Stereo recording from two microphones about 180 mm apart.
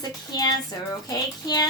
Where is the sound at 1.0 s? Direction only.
20° left (ahead or behind).